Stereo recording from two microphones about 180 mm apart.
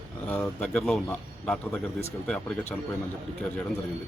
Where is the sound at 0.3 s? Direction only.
10° left (ahead or behind).